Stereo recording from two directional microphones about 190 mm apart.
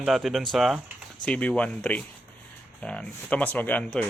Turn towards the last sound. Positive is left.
turn(degrees=5)  # may be behind; listen again after turning